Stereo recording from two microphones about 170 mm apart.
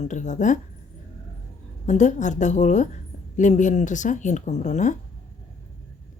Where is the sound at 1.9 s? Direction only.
45° left (ahead or behind).